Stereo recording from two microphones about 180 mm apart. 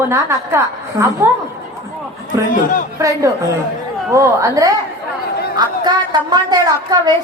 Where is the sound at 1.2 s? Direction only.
10° right (ahead or behind).